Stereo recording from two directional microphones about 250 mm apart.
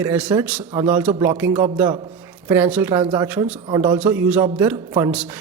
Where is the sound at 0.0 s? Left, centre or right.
Centre.